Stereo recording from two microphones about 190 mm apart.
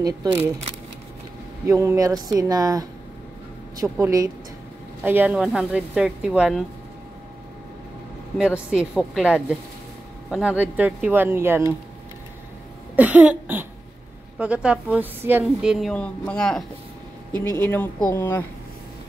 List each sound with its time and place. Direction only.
0.0 s speech: 15° right (ahead or behind)
1.7 s a woman's voice: 15° right (ahead or behind)
8.4 s a woman's voice: 5° right (ahead or behind)
12.9 s a woman's voice: 10° right (ahead or behind); by 18.4 s 10° left (ahead or behind)